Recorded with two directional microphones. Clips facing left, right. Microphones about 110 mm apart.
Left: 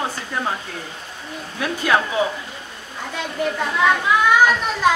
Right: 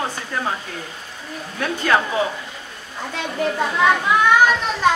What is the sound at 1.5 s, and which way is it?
Speech, 5° left (ahead or behind).